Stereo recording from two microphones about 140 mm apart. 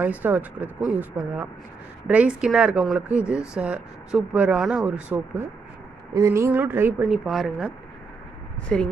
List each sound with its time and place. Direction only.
0.0 s speech: 10° right (ahead or behind)
7.1 s speech: centre (ahead or behind)